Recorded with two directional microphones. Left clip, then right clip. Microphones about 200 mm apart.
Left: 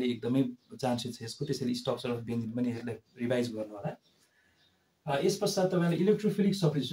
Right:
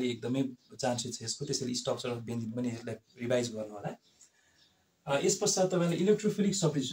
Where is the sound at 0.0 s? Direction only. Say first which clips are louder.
Left 2 dB; 20° left (ahead or behind).